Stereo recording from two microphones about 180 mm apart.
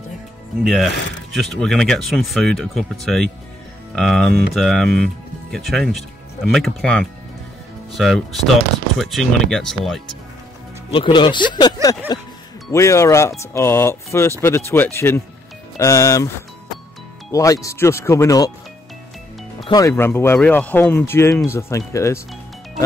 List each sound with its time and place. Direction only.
0.7 s speech: centre (ahead or behind)
10.9 s speech: 25° left (ahead or behind)
17.3 s speech: 20° left (ahead or behind)
19.6 s speech: 20° left (ahead or behind)